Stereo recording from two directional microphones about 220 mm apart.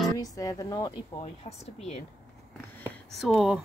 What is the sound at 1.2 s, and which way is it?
Speech, 30° left (ahead or behind).